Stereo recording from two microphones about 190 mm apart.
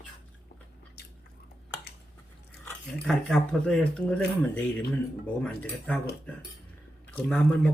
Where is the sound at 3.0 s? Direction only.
5° left (ahead or behind).